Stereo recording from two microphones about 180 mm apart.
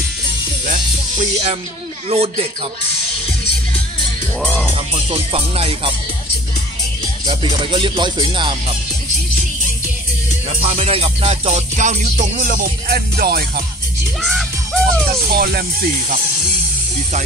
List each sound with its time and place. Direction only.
2.0 s music: 35° right (ahead or behind)
4.4 s speech: 10° left (ahead or behind)
4.7 s music: 30° right (ahead or behind)
7.2 s music: 30° right (ahead or behind)
10.6 s music: 35° right (ahead or behind); by 13.5 s 60° right (ahead or behind)
14.2 s music: centre (ahead or behind)
15.2 s speech: 55° right (ahead or behind)